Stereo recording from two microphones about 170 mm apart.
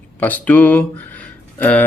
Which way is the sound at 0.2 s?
10° left (ahead or behind).